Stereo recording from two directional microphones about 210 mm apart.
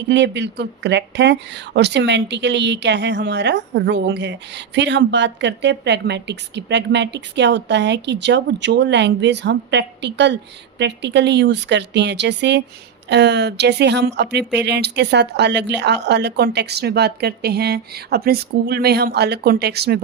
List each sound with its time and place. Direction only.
0.1 s speech: 55° right (ahead or behind)